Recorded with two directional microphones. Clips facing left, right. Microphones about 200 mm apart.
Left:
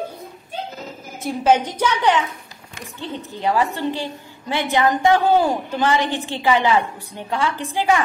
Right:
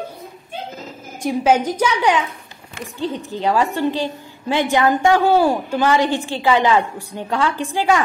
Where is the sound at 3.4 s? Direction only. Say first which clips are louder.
Right 2 dB; 15° left (ahead or behind).